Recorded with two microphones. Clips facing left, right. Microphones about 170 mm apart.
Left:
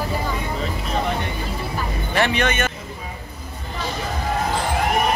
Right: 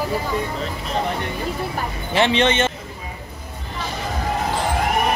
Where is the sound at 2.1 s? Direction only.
25° right (ahead or behind).